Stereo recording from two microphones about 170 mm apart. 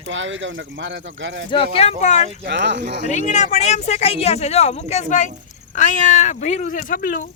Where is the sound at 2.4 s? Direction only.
90° right.